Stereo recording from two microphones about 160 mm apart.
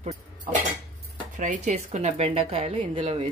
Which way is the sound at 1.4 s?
50° right (ahead or behind).